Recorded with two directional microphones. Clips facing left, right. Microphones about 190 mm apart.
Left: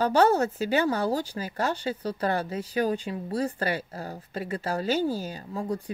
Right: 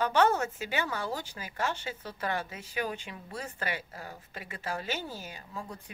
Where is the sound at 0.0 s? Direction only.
35° left (ahead or behind).